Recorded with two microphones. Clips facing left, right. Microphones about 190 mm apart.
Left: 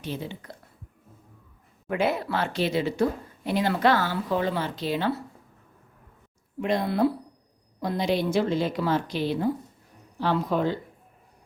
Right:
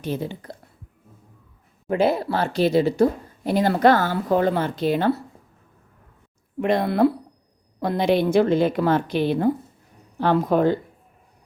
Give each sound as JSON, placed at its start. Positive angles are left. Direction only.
{"t": 0.0, "sound": "speech", "side_deg": -45}
{"t": 1.9, "sound": "speech", "side_deg": -35}
{"t": 6.6, "sound": "a woman's voice", "side_deg": -60}